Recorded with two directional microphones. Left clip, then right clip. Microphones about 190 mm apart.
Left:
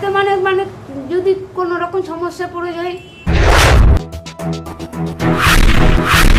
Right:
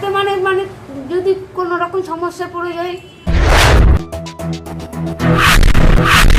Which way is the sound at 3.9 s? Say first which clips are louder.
Right 1 dB; centre (ahead or behind).